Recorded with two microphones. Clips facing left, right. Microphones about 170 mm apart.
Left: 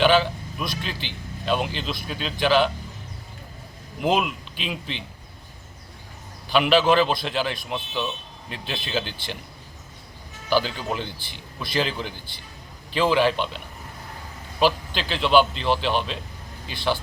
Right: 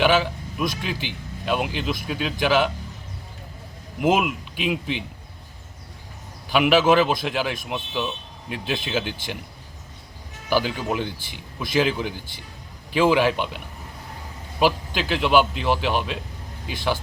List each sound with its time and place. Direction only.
0.0 s speech: 10° right (ahead or behind)
4.0 s speech: 10° right (ahead or behind)
6.5 s speech: 10° right (ahead or behind)
10.5 s speech: 10° right (ahead or behind)
14.6 s speech: 10° right (ahead or behind)